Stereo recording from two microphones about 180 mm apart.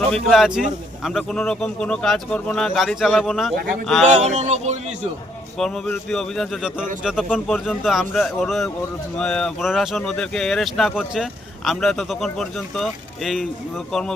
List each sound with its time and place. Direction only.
0.1 s speech: centre (ahead or behind)
4.2 s speech: 40° right (ahead or behind)
5.5 s speech: 5° left (ahead or behind)